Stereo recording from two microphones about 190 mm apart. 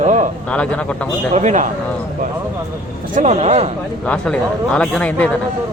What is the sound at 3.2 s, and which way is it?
Speech, 35° right (ahead or behind).